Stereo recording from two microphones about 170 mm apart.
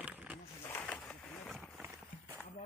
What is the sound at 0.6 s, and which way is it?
Pigeon, 10° left (ahead or behind).